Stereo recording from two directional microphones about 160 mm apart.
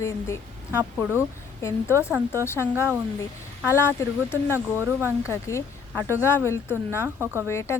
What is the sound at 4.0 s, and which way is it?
Speech, 15° left (ahead or behind).